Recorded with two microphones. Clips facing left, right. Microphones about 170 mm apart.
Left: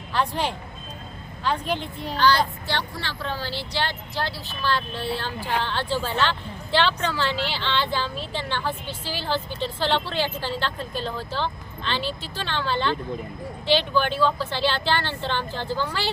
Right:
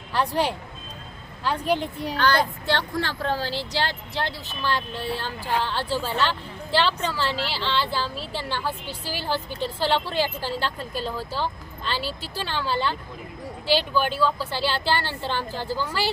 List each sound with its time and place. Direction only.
0.1 s speech: 10° right (ahead or behind)
2.7 s speech: 50° right (ahead or behind)
4.2 s speech: 20° right (ahead or behind)
7.3 s speech: 40° right (ahead or behind)
7.5 s speech: 5° right (ahead or behind)